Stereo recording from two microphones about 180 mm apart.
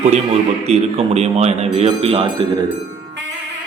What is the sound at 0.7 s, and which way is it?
A man's voice, 35° right (ahead or behind).